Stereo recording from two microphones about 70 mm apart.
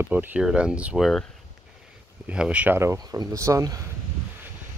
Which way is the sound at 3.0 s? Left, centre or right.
Right.